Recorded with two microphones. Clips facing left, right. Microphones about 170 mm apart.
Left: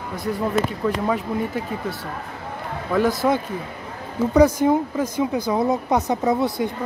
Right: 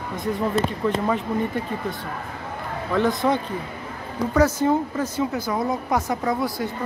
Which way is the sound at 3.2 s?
5° left (ahead or behind).